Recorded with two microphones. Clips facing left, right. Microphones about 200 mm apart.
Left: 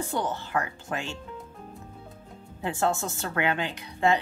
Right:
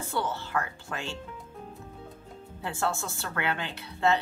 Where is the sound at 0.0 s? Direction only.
15° left (ahead or behind).